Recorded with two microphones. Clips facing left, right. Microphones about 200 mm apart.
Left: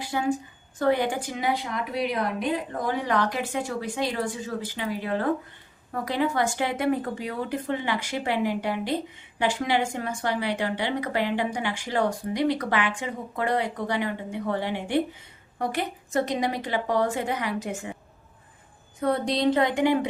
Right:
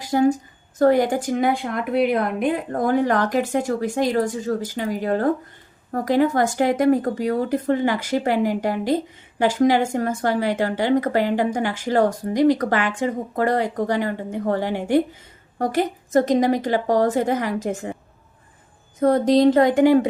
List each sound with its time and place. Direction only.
0.0 s a woman's voice: 40° right (ahead or behind)
18.9 s speech: 45° right (ahead or behind)